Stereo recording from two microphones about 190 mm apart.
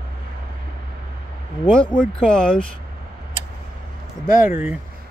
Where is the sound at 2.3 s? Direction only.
5° left (ahead or behind).